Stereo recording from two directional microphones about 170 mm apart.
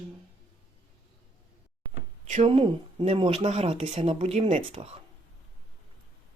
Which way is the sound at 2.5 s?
30° right (ahead or behind).